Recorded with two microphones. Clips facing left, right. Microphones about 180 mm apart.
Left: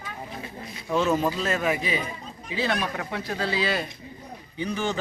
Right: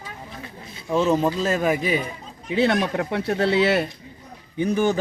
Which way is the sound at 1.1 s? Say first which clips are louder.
Right 4 dB; 20° right (ahead or behind).